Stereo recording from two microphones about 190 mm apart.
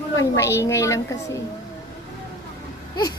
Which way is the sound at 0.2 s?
15° left (ahead or behind).